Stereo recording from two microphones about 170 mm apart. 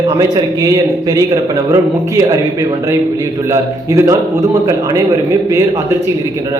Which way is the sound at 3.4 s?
15° right (ahead or behind).